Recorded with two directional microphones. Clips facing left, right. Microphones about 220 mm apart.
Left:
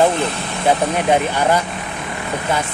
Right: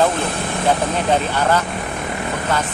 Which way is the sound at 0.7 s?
15° left (ahead or behind).